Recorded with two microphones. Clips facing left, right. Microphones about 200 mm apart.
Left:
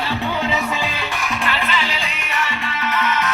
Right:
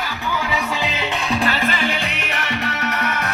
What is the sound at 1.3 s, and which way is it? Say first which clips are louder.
Music: right 3 dB; 40° right (ahead or behind).